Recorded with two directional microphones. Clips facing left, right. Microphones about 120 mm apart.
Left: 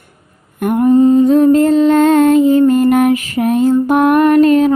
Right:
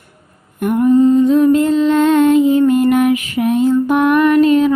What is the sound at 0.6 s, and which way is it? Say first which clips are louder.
Mantra: left 1 dB; 50° left (ahead or behind).